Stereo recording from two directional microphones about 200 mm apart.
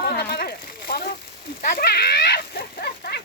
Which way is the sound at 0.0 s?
50° left (ahead or behind).